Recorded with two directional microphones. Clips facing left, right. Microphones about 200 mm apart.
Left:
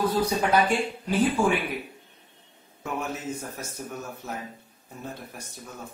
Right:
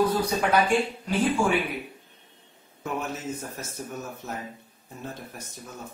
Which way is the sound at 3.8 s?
5° right (ahead or behind).